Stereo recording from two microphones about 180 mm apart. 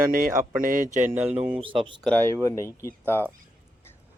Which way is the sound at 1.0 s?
10° right (ahead or behind).